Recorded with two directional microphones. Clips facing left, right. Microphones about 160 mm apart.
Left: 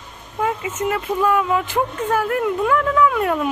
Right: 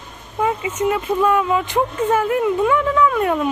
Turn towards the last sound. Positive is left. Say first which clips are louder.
# right 1 dB
turn(degrees=0)  # may be behind; listen again after turning